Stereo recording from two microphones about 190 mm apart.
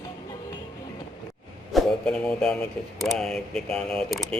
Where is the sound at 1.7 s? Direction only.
Centre (ahead or behind).